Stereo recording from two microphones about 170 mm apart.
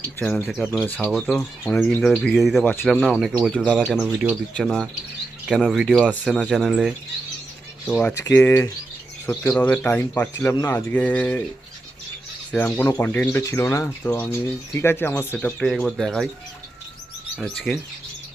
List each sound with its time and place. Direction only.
0.2 s speech: 10° left (ahead or behind)
0.4 s speech: centre (ahead or behind)
8.1 s speech: 15° left (ahead or behind)
12.5 s speech: 10° left (ahead or behind)
17.4 s speech: centre (ahead or behind)